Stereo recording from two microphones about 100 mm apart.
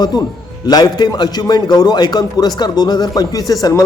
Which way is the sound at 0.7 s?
45° left (ahead or behind).